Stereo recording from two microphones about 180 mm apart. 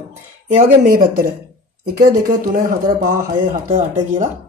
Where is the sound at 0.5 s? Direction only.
50° right (ahead or behind).